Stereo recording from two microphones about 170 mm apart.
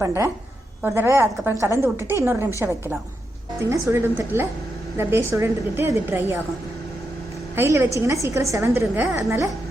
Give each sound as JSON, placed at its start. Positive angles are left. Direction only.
{"t": 0.0, "sound": "a woman's voice", "side_deg": -15}
{"t": 3.7, "sound": "a woman's voice", "side_deg": -15}
{"t": 7.5, "sound": "a woman's voice", "side_deg": -15}